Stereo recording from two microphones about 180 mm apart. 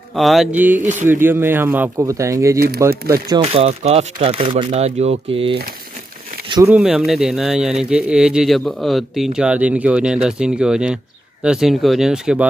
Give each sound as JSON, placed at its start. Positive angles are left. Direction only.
{"t": 0.1, "sound": "speech", "side_deg": 0}
{"t": 6.7, "sound": "speech", "side_deg": -5}